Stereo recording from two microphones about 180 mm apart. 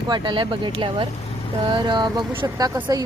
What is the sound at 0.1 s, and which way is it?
Speech, 25° right (ahead or behind).